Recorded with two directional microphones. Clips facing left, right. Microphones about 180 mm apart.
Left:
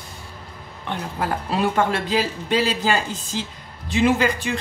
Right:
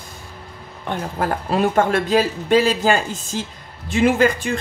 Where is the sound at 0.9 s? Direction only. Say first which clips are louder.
Right 3 dB; 45° right (ahead or behind).